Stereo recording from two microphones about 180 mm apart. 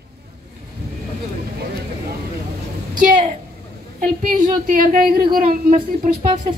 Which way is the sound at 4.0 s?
45° right (ahead or behind).